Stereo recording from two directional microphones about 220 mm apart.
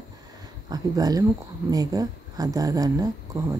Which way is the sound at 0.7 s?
15° right (ahead or behind).